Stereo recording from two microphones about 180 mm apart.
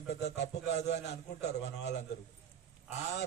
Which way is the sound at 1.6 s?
70° left (ahead or behind).